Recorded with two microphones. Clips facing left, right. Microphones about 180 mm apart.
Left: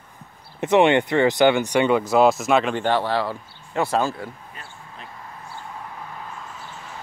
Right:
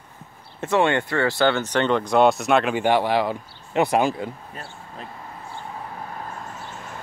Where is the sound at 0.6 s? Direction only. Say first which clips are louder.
Left 4 dB; 20° left (ahead or behind); by 4.3 s 15° right (ahead or behind).